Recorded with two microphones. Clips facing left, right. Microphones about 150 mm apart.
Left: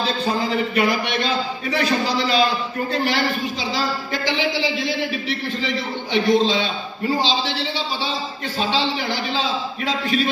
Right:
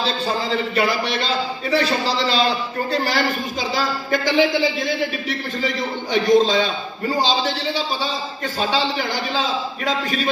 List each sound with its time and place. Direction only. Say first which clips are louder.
0.7 s a man's voice: right 1 dB; 30° right (ahead or behind)
2.9 s speech: right 1 dB; 40° right (ahead or behind)
6.1 s speech: right 2 dB; 45° right (ahead or behind)